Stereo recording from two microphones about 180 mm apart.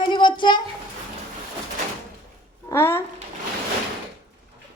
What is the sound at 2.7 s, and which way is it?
Speech, 15° left (ahead or behind).